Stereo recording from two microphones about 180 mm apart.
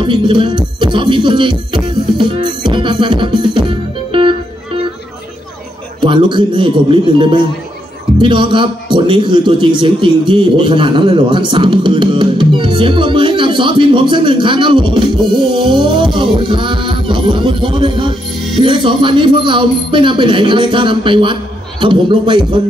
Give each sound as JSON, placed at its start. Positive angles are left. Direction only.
{"t": 0.0, "sound": "music", "side_deg": -30}
{"t": 5.9, "sound": "a man's voice", "side_deg": -25}